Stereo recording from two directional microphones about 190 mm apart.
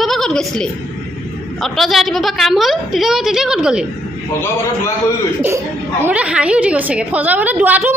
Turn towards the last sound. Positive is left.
turn(degrees=-10)  # may be behind; listen again after turning